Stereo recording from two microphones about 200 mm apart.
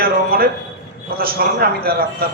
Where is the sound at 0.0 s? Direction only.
50° right (ahead or behind).